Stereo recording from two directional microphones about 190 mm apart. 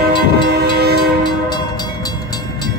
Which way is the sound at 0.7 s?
60° right (ahead or behind).